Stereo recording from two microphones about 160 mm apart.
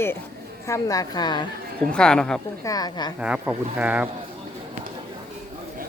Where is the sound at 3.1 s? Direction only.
5° right (ahead or behind).